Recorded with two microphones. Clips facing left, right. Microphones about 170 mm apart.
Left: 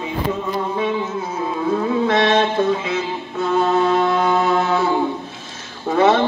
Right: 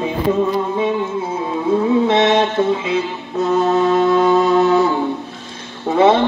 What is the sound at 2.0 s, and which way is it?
Mantra, 20° right (ahead or behind).